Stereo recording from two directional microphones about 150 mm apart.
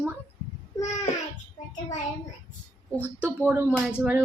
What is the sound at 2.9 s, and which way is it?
Speech, 15° left (ahead or behind).